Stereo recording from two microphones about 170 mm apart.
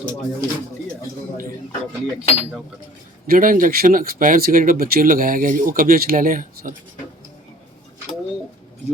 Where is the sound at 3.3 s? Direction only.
55° right (ahead or behind).